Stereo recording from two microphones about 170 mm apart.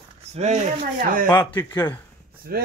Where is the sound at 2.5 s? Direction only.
60° right (ahead or behind).